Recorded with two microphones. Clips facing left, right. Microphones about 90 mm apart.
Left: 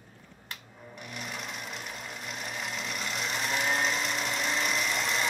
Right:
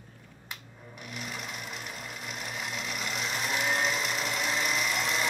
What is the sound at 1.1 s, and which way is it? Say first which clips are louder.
Sewing machine: even; centre (ahead or behind).